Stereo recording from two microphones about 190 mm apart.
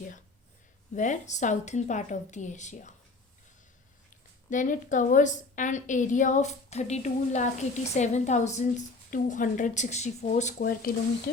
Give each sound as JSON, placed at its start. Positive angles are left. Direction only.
{"t": 0.9, "sound": "a woman's voice", "side_deg": 40}
{"t": 4.4, "sound": "a woman's voice", "side_deg": 40}
{"t": 10.6, "sound": "speech", "side_deg": 50}